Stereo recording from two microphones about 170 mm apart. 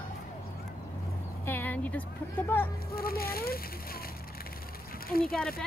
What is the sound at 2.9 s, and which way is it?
Speech, 60° left (ahead or behind).